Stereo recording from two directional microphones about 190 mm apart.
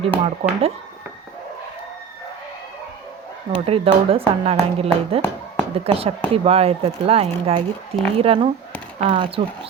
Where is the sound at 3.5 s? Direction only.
30° right (ahead or behind).